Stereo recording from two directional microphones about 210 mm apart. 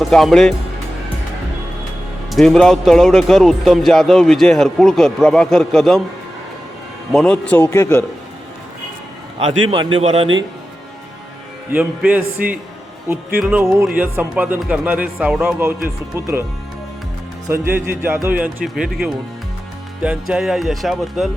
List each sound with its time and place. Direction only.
0.0 s a man's voice: centre (ahead or behind)
2.3 s a man's voice: centre (ahead or behind)
7.1 s a man's voice: 5° left (ahead or behind)
9.4 s a man's voice: 30° right (ahead or behind)
11.7 s speech: 5° right (ahead or behind)
17.4 s speech: 15° right (ahead or behind)
20.0 s a man's voice: 5° right (ahead or behind)